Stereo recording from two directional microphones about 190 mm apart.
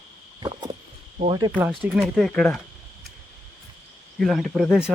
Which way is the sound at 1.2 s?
25° right (ahead or behind).